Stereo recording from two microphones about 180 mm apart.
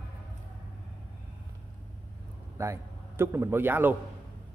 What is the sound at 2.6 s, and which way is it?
A man's voice, 15° right (ahead or behind).